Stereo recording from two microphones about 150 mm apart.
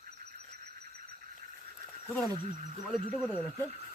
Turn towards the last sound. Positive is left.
turn(degrees=-5)  # may be behind; listen again after turning